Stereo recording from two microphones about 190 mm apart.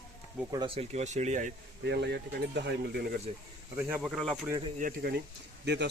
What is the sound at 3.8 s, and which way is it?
Speech, 5° right (ahead or behind).